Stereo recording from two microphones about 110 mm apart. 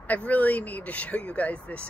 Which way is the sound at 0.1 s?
15° left (ahead or behind).